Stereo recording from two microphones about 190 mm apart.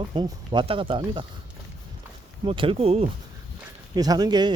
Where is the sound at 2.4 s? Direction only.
25° right (ahead or behind).